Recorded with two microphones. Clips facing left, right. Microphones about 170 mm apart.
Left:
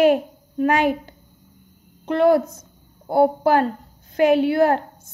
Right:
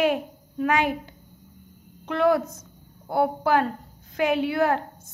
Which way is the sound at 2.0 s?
35° left (ahead or behind).